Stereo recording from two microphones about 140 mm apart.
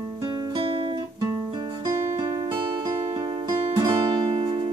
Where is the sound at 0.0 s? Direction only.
25° right (ahead or behind).